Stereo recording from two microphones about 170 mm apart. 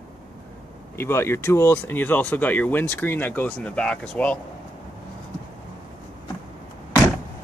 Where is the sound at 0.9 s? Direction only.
15° left (ahead or behind).